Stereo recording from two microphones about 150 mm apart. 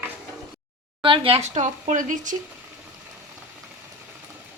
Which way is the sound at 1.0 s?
35° right (ahead or behind).